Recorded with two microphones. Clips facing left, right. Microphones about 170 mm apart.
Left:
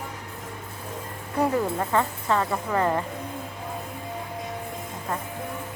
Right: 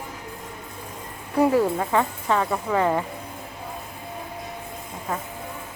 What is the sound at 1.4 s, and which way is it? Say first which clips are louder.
Speech: right 4 dB; 5° right (ahead or behind).